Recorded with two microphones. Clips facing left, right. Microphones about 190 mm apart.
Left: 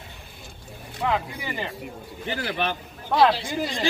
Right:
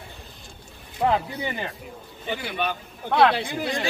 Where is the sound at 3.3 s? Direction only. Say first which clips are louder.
Even; 60° right (ahead or behind).